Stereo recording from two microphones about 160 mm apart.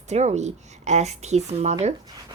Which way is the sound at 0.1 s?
45° right (ahead or behind).